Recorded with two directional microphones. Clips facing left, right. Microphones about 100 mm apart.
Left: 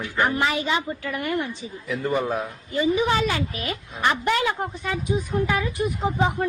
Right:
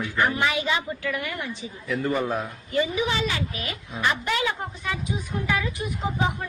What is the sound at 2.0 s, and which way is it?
Speech, 15° left (ahead or behind).